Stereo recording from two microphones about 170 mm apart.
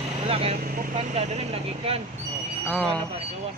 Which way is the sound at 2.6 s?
5° left (ahead or behind).